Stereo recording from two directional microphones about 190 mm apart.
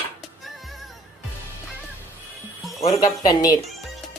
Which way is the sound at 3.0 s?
20° left (ahead or behind).